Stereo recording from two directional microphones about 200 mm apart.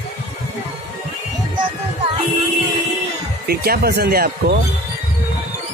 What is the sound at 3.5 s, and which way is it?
Speech, 50° right (ahead or behind).